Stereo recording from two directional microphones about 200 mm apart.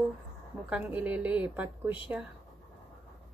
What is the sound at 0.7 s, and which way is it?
A woman's voice, 5° right (ahead or behind).